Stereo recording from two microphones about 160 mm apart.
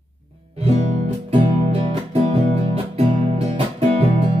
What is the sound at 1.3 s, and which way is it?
Music, 40° right (ahead or behind).